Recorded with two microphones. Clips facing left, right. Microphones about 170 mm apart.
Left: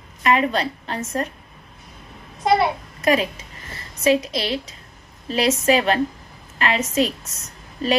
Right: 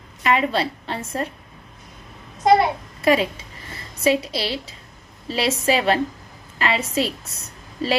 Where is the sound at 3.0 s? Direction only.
30° right (ahead or behind).